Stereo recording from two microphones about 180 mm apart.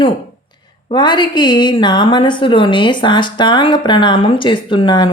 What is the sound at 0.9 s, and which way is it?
A woman's voice, 25° left (ahead or behind).